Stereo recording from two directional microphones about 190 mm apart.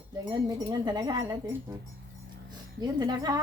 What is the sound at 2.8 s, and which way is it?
Speech, 20° right (ahead or behind).